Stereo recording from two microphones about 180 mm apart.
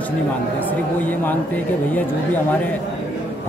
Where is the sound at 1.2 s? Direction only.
10° left (ahead or behind).